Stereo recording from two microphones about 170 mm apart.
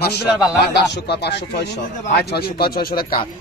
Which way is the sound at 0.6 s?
80° left.